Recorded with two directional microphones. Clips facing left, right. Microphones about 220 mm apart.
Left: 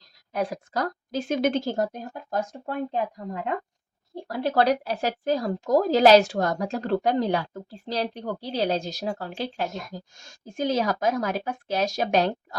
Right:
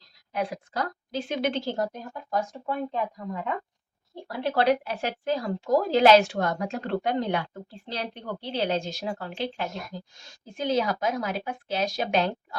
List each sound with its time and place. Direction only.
0.3 s speech: 40° left (ahead or behind)
4.1 s a woman's voice: 40° left (ahead or behind)